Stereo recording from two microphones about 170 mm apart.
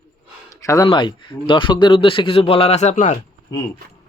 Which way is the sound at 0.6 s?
20° left (ahead or behind).